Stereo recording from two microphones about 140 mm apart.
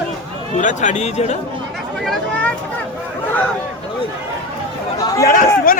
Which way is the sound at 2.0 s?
Centre (ahead or behind).